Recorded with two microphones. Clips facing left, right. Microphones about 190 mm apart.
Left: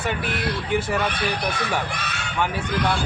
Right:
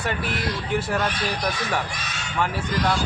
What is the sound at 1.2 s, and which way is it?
Speech, 60° left (ahead or behind).